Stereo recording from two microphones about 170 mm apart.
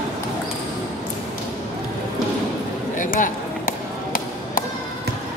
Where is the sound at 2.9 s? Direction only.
50° left (ahead or behind).